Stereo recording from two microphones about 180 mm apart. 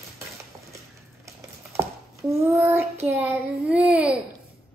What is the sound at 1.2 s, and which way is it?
Child singing, 15° right (ahead or behind).